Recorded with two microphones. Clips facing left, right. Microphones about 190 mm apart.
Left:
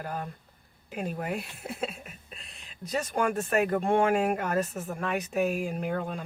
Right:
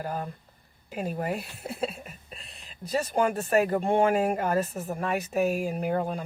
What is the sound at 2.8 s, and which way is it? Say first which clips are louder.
Speech: right 3 dB; 35° right (ahead or behind).